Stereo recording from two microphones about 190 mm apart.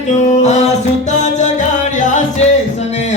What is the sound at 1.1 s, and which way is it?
Music, 40° left (ahead or behind).